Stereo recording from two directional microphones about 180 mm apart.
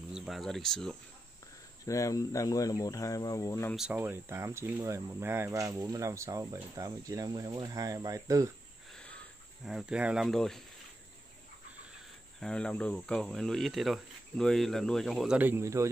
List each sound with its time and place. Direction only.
0.1 s speech: centre (ahead or behind)
1.9 s speech: 20° left (ahead or behind)
3.7 s speech: 5° right (ahead or behind)
8.9 s a sound: 5° left (ahead or behind)
9.7 s speech: 5° right (ahead or behind)
12.4 s speech: 5° left (ahead or behind); by 15.9 s 15° right (ahead or behind)